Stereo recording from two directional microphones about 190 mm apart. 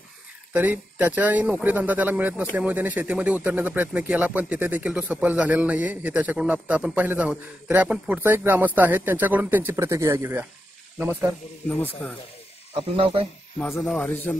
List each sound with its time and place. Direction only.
0.5 s speech: 10° right (ahead or behind)
12.7 s speech: 25° right (ahead or behind)
13.6 s speech: 10° left (ahead or behind)